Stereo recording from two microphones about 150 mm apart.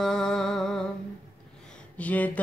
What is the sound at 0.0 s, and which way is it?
Music, 5° left (ahead or behind).